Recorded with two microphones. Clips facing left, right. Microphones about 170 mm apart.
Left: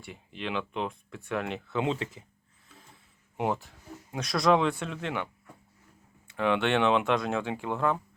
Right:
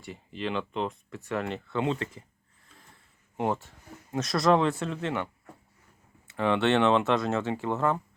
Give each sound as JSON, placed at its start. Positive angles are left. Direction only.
{"t": 0.0, "sound": "speech", "side_deg": 0}
{"t": 1.8, "sound": "speech", "side_deg": 15}
{"t": 3.3, "sound": "speech", "side_deg": 5}
{"t": 6.2, "sound": "speech", "side_deg": 0}